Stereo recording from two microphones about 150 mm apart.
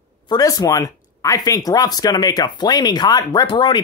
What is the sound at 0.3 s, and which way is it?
Speech, 25° left (ahead or behind).